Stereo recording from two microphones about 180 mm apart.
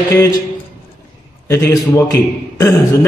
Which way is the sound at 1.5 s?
15° left (ahead or behind).